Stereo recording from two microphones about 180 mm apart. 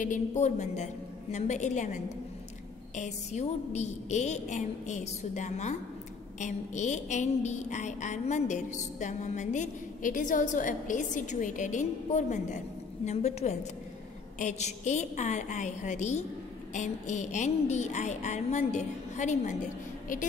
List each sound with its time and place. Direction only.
0.0 s a woman's voice: 45° left (ahead or behind)
3.0 s a woman's voice: 40° left (ahead or behind)